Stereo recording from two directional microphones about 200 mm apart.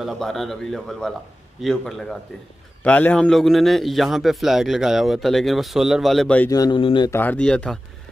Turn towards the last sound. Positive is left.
turn(degrees=5)  # may be behind; listen again after turning